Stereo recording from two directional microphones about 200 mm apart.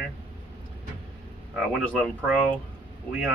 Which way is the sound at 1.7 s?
Centre (ahead or behind).